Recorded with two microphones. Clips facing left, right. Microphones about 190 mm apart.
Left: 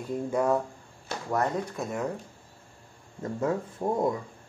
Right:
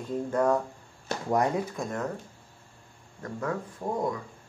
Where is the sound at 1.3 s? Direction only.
15° right (ahead or behind).